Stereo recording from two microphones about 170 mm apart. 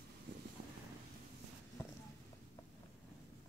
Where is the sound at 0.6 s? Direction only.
60° right (ahead or behind).